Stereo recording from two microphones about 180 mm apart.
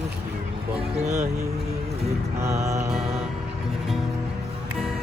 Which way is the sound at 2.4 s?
15° right (ahead or behind).